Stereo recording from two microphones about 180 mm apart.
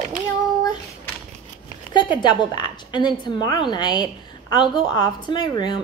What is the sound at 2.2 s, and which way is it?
A woman's voice, 25° left (ahead or behind).